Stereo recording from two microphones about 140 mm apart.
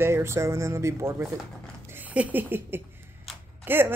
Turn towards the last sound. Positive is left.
turn(degrees=-15)  # may be behind; listen again after turning